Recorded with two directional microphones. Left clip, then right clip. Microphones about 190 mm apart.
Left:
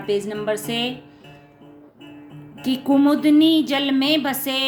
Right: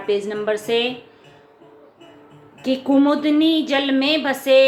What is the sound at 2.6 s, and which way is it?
A woman's voice, 25° left (ahead or behind).